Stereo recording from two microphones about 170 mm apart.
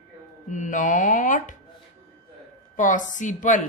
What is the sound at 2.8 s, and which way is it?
Speech, 50° left (ahead or behind).